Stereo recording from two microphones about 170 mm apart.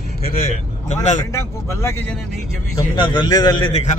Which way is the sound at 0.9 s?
45° left (ahead or behind).